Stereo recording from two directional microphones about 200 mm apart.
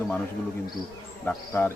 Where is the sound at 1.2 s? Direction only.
10° left (ahead or behind).